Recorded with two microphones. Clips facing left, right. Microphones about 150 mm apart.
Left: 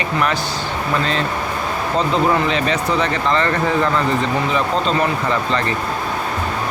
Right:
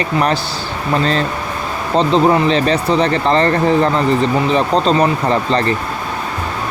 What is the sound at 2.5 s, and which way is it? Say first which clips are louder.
Speech: right 5 dB; 35° right (ahead or behind).